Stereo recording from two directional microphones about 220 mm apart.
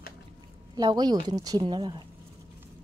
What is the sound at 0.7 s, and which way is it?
A woman's voice, 20° right (ahead or behind).